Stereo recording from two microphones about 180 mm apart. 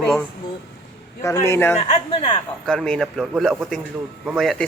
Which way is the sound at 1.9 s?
35° left (ahead or behind).